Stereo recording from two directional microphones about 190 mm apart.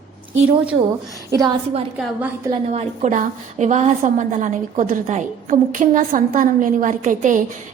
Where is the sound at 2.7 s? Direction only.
40° right (ahead or behind).